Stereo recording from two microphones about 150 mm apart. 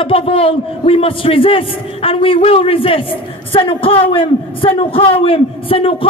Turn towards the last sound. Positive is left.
turn(degrees=40)  # may be behind; listen again after turning